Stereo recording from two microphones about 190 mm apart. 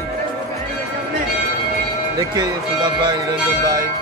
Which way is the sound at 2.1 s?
20° right (ahead or behind).